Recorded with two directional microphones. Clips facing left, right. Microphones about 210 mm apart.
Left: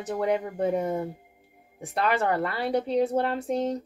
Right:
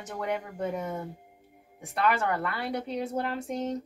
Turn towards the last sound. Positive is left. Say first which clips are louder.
# left 5 dB
turn(degrees=35)  # may be behind; listen again after turning